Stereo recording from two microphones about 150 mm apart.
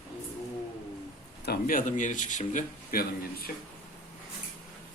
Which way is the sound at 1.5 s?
65° left (ahead or behind).